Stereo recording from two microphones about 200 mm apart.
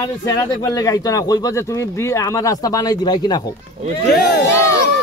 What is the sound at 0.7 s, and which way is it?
Speech, 20° left (ahead or behind).